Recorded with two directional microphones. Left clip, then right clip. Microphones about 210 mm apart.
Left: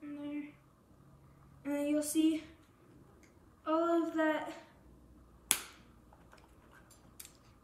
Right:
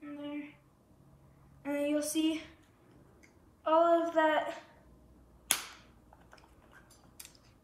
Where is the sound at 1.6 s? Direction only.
10° left (ahead or behind).